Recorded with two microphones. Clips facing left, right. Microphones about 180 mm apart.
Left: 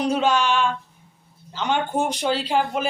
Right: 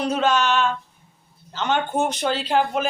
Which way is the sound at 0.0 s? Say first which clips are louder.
Even; 10° left (ahead or behind).